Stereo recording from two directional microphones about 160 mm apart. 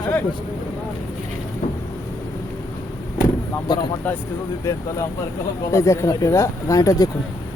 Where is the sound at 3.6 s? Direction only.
25° left (ahead or behind).